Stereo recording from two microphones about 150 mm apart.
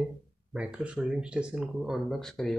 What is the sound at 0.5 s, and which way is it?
Speech, 5° right (ahead or behind).